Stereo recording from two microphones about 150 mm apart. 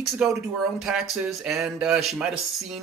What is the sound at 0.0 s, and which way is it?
Speech, 5° right (ahead or behind).